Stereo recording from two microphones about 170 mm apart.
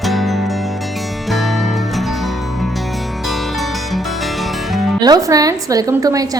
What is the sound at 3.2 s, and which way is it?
Music, centre (ahead or behind).